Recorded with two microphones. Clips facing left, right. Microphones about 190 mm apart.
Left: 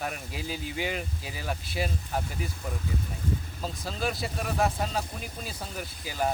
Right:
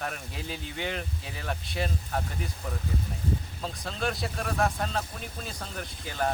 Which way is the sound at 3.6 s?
Centre (ahead or behind).